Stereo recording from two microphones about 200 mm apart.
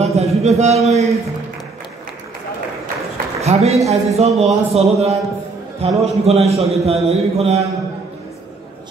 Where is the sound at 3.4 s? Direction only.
30° right (ahead or behind).